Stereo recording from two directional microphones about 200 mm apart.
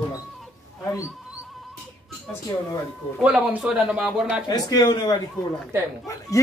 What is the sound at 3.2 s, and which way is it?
Speech, 5° right (ahead or behind).